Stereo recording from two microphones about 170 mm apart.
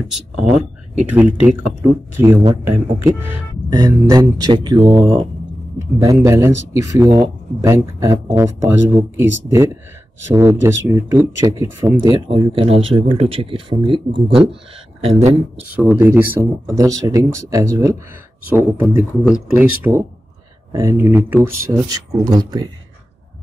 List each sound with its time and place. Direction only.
2.1 s a man's voice: 15° right (ahead or behind)
12.0 s speech: 25° right (ahead or behind)
15.7 s speech: 10° right (ahead or behind)